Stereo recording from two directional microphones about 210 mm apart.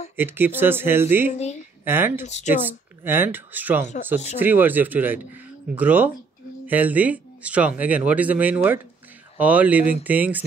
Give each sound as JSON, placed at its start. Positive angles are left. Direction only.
{"t": 0.1, "sound": "speech", "side_deg": -10}
{"t": 1.3, "sound": "a woman's voice", "side_deg": 30}
{"t": 1.9, "sound": "speech", "side_deg": -10}
{"t": 2.2, "sound": "a woman's voice", "side_deg": 35}
{"t": 2.5, "sound": "speech", "side_deg": -10}